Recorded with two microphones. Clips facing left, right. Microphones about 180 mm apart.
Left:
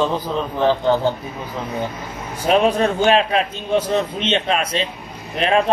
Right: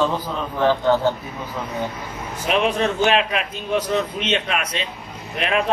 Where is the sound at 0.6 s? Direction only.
15° left (ahead or behind).